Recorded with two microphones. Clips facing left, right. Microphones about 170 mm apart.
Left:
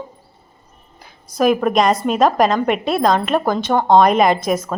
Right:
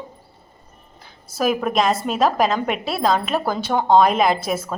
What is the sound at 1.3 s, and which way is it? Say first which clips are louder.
A woman's voice: left 5 dB; centre (ahead or behind).